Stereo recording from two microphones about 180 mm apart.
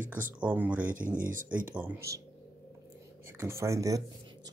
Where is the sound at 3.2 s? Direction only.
15° right (ahead or behind).